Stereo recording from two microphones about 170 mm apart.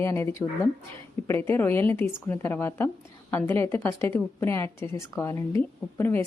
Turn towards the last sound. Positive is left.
turn(degrees=15)  # may be behind; listen again after turning